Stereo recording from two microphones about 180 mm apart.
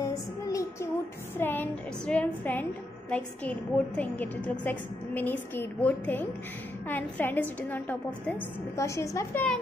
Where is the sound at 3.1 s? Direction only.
5° left (ahead or behind).